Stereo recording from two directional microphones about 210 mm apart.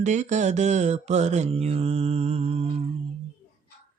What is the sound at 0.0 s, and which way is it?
Mantra, 35° right (ahead or behind).